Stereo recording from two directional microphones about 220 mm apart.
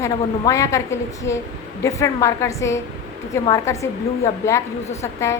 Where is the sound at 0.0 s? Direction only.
15° left (ahead or behind).